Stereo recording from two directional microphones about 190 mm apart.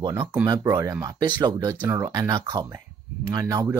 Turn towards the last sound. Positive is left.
turn(degrees=-15)  # may be behind; listen again after turning